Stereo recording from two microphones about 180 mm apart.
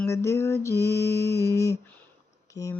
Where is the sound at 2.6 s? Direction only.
20° left (ahead or behind).